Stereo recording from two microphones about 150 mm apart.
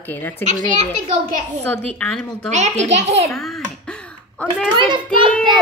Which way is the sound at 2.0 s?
5° left (ahead or behind).